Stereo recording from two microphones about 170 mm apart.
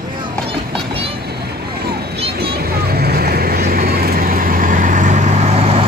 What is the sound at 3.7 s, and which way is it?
Vehicle, 60° right (ahead or behind).